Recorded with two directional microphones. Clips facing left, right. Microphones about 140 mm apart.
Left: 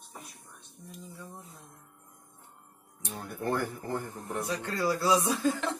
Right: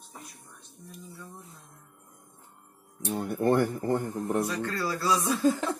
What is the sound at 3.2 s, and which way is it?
Speech, 65° right (ahead or behind).